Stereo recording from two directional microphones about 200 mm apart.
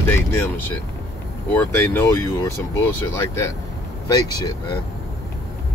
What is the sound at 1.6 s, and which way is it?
Speech, 10° left (ahead or behind).